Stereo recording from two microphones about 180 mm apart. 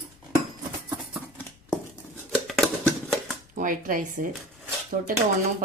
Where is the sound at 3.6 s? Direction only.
50° right (ahead or behind).